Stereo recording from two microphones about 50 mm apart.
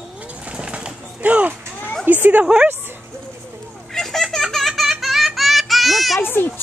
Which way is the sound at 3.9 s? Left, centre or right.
Centre.